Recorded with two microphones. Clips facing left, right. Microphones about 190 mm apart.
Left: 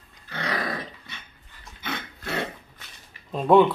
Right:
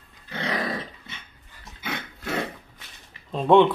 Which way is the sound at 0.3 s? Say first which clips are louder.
Right 1 dB; 25° right (ahead or behind).